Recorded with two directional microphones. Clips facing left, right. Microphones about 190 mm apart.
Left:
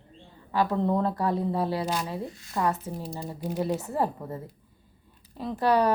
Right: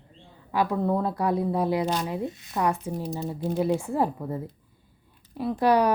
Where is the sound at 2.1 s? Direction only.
20° right (ahead or behind).